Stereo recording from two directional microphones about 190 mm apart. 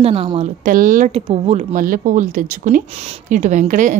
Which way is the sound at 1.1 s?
30° right (ahead or behind).